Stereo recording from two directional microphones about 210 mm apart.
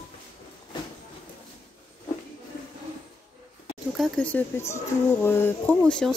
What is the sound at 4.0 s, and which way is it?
Speech, 5° left (ahead or behind).